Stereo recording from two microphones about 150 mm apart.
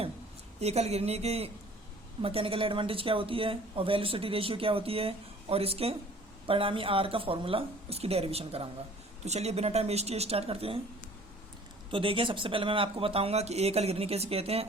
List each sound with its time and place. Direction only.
0.6 s a woman's voice: 45° right (ahead or behind)
11.9 s a woman's voice: 35° right (ahead or behind)